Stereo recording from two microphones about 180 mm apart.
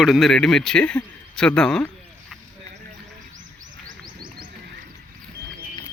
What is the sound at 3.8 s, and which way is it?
Wild animals, 50° right (ahead or behind).